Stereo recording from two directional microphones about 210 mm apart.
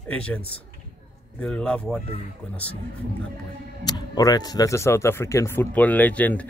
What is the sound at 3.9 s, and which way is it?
Speech, 20° left (ahead or behind).